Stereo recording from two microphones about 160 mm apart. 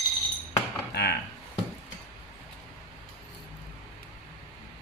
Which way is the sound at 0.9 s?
90° left.